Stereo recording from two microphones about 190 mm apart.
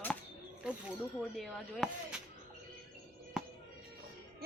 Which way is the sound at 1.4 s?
Centre (ahead or behind).